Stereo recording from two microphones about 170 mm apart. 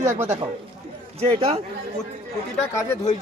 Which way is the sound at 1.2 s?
40° right (ahead or behind).